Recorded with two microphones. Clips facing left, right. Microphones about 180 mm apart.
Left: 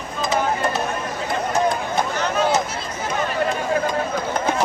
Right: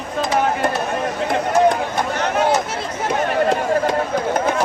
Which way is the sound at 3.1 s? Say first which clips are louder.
Right 5 dB; 80° right.